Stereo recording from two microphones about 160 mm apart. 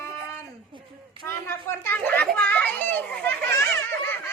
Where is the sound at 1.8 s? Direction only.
10° left (ahead or behind).